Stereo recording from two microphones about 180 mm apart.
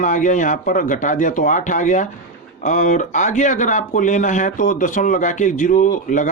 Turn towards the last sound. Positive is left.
turn(degrees=45)  # may be behind; listen again after turning